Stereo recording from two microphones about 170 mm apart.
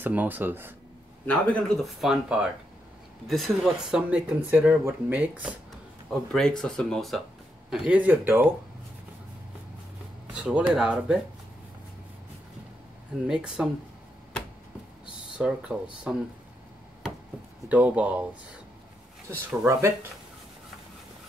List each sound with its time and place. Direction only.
0.0 s speech: 10° right (ahead or behind)
1.2 s speech: 5° left (ahead or behind); by 5.5 s 10° right (ahead or behind)
6.0 s speech: 5° left (ahead or behind)
10.2 s a sound: 5° right (ahead or behind)
10.7 s speech: 5° right (ahead or behind)
13.3 s speech: 5° right (ahead or behind)
15.3 s speech: 5° right (ahead or behind)
17.6 s speech: 10° right (ahead or behind)
19.3 s speech: 15° right (ahead or behind)